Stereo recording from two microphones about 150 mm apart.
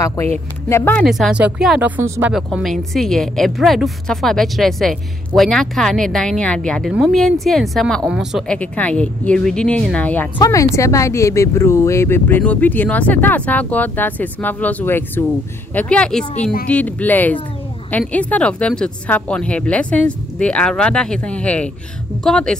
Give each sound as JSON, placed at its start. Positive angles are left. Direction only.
{"t": 0.0, "sound": "speech", "side_deg": 15}
{"t": 1.0, "sound": "speech", "side_deg": 0}
{"t": 2.3, "sound": "a woman's voice", "side_deg": 0}
{"t": 8.5, "sound": "speech", "side_deg": 10}
{"t": 10.4, "sound": "a woman's voice", "side_deg": 20}